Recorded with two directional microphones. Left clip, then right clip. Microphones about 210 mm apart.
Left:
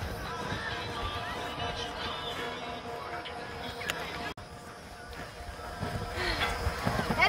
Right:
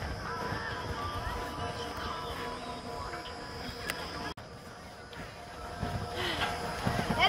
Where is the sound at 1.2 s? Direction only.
45° left (ahead or behind).